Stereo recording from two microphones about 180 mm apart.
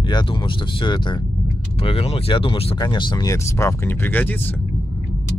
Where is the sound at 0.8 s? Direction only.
25° left (ahead or behind).